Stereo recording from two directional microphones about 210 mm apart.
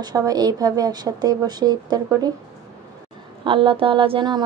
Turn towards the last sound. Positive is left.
turn(degrees=-20)  # may be behind; listen again after turning